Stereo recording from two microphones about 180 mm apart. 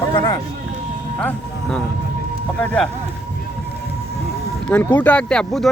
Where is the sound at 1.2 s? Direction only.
5° left (ahead or behind).